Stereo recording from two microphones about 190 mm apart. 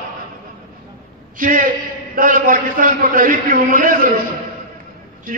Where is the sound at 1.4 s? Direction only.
45° right (ahead or behind).